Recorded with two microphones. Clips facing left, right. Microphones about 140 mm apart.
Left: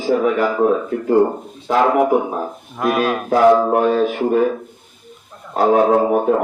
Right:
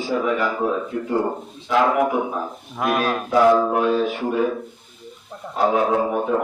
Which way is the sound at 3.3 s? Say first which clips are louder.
Left 3 dB; 50° left (ahead or behind).